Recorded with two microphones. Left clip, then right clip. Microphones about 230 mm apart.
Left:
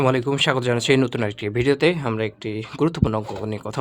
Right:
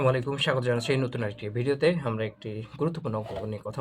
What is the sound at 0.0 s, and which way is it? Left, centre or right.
Speech, left.